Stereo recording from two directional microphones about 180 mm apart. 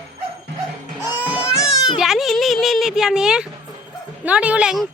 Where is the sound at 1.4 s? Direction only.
20° left (ahead or behind).